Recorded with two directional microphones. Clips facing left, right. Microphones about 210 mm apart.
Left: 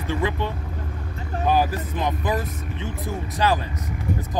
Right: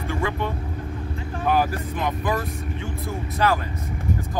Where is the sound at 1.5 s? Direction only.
15° left (ahead or behind).